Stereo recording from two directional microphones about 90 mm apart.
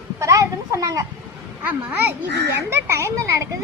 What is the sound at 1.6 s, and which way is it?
Speech, 20° right (ahead or behind).